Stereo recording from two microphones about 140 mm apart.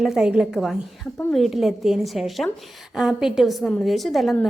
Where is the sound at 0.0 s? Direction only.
5° right (ahead or behind).